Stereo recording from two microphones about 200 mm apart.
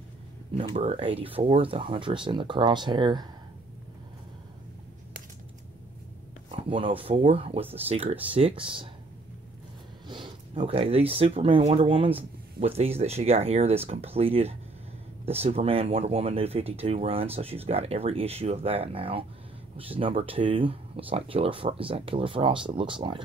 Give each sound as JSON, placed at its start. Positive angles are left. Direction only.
{"t": 0.6, "sound": "speech", "side_deg": -25}
{"t": 6.7, "sound": "speech", "side_deg": -25}
{"t": 10.0, "sound": "a sound", "side_deg": -25}
{"t": 10.6, "sound": "speech", "side_deg": -30}